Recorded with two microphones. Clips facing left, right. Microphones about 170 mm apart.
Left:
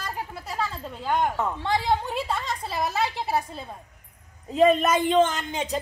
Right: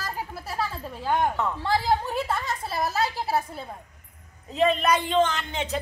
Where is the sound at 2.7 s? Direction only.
20° left (ahead or behind).